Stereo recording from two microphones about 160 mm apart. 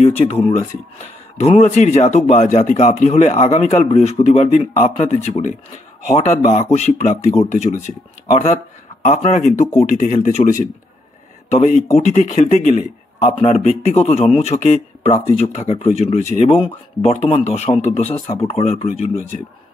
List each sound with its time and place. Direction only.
0.0 s a sound: 40° left (ahead or behind)
1.4 s speech: 45° left (ahead or behind)
9.0 s speech: 50° left (ahead or behind)